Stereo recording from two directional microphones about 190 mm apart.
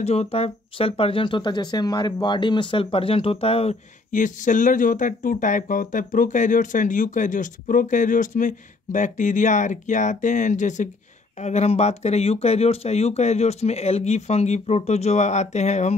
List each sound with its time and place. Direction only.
0.0 s speech: 35° left (ahead or behind)